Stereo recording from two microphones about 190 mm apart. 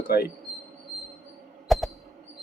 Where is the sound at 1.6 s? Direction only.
Centre (ahead or behind).